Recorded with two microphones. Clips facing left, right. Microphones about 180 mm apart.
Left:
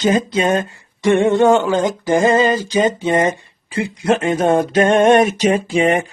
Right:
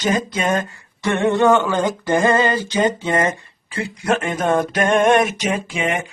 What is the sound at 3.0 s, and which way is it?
Speech, 20° left (ahead or behind).